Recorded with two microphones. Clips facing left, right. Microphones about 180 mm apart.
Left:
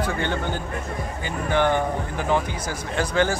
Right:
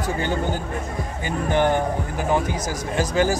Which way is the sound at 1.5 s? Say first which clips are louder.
Right 1 dB; 15° right (ahead or behind).